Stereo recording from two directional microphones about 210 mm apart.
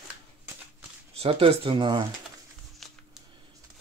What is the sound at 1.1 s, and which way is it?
Speech, 25° right (ahead or behind).